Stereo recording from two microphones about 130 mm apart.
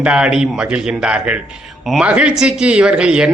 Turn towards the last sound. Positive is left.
turn(degrees=-5)  # may be behind; listen again after turning